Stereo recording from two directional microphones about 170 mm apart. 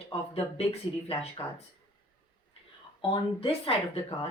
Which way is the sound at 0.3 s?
35° left (ahead or behind).